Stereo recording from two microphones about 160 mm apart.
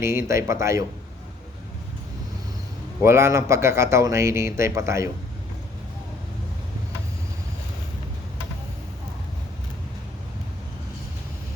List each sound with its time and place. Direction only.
0.0 s speech: 15° right (ahead or behind)
3.0 s speech: 15° right (ahead or behind)